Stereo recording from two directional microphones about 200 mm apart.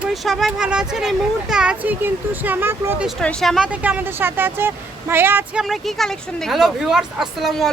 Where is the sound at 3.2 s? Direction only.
5° left (ahead or behind).